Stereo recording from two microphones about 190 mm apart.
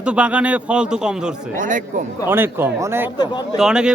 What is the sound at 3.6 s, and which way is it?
Speech, 5° right (ahead or behind).